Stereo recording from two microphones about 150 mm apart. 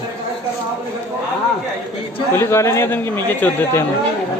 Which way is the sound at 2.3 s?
15° left (ahead or behind).